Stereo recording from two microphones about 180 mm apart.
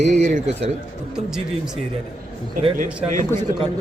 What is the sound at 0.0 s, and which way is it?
Speech, 45° right (ahead or behind).